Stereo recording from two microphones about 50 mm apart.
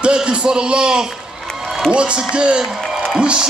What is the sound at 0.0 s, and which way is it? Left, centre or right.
A man's voice, centre.